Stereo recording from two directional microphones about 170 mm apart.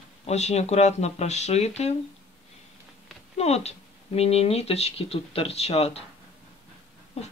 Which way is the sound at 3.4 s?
40° left (ahead or behind).